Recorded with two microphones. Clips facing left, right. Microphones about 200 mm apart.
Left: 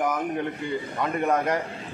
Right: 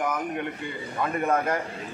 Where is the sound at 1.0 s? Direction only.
20° left (ahead or behind).